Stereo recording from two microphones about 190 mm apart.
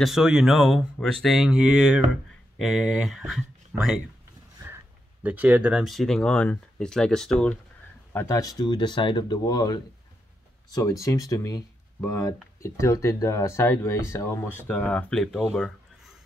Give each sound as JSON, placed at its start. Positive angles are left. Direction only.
{"t": 0.0, "sound": "speech", "side_deg": 0}
{"t": 8.1, "sound": "speech", "side_deg": 15}